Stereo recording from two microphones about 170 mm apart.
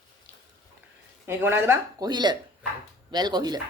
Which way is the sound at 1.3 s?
15° right (ahead or behind).